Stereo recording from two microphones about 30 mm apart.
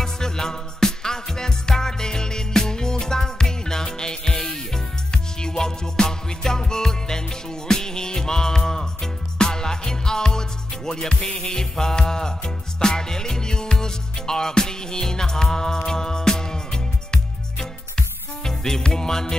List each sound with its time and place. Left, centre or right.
0.0 s music: centre